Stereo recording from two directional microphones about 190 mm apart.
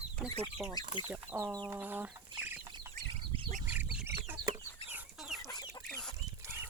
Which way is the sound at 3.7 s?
5° right (ahead or behind).